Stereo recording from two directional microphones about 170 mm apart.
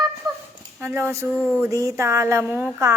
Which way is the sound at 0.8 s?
10° right (ahead or behind).